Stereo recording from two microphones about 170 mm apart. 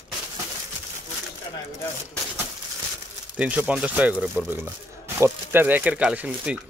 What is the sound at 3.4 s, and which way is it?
Speech, 5° right (ahead or behind).